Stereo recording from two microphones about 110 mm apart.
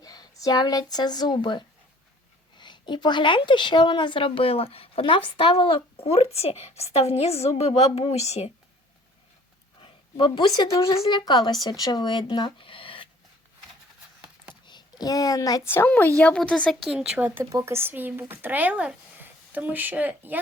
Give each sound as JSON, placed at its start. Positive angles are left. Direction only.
{"t": 0.0, "sound": "a woman's voice", "side_deg": 35}
{"t": 6.1, "sound": "a woman's voice", "side_deg": 70}
{"t": 9.8, "sound": "a woman's voice", "side_deg": 50}
{"t": 10.7, "sound": "a woman's voice", "side_deg": 30}
{"t": 14.7, "sound": "a child's voice", "side_deg": 40}
{"t": 15.6, "sound": "speech", "side_deg": 20}
{"t": 16.8, "sound": "speech", "side_deg": -5}
{"t": 17.5, "sound": "speech", "side_deg": -25}